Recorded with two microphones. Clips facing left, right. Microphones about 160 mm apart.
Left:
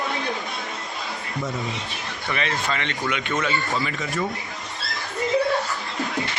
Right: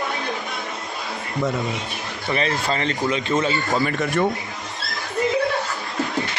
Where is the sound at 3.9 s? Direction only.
55° right (ahead or behind).